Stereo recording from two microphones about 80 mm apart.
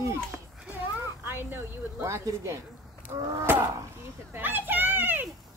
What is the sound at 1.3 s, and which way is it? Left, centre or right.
Speech, right.